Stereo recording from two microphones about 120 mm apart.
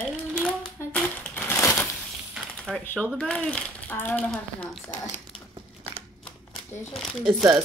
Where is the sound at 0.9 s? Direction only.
15° left (ahead or behind).